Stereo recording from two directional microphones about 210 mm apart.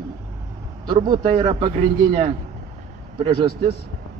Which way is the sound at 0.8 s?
20° right (ahead or behind).